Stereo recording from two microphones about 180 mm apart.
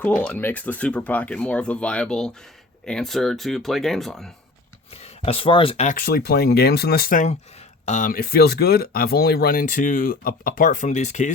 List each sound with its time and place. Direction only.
0.0 s speech: 10° left (ahead or behind)
4.9 s speech: 35° left (ahead or behind)
6.0 s speech: 55° left (ahead or behind); by 11.3 s 40° left (ahead or behind)